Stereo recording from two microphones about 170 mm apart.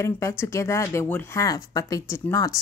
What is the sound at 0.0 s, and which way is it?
A woman's voice, 15° left (ahead or behind).